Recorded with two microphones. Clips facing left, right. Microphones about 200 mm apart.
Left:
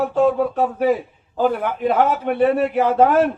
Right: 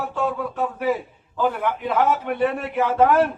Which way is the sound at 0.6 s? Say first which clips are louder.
Left 2 dB; 35° left (ahead or behind).